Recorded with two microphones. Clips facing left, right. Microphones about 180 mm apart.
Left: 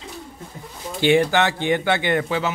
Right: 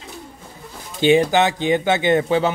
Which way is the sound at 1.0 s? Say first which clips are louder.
Right 2 dB; 20° right (ahead or behind).